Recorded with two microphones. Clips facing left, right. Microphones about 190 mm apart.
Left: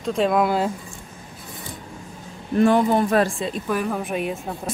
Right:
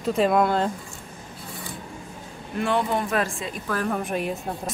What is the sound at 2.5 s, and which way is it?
Speech, 40° left (ahead or behind).